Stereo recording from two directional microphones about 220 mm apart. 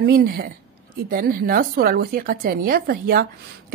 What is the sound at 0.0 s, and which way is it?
A woman's voice, 45° right (ahead or behind).